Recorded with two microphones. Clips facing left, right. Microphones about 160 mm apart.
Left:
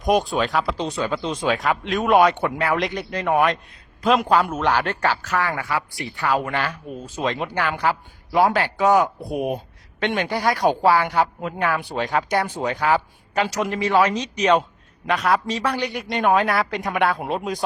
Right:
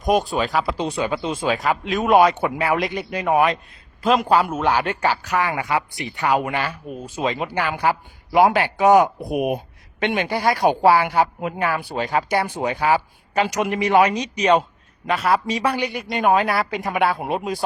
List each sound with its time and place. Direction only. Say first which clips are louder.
0.0 s speech: even; centre (ahead or behind)
15.9 s speech: left 1 dB; centre (ahead or behind)